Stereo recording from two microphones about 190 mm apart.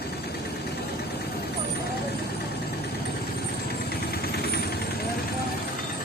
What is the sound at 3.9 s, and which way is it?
Vehicle, 55° left (ahead or behind).